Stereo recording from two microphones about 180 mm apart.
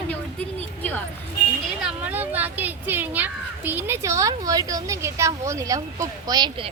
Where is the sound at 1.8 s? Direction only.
10° right (ahead or behind).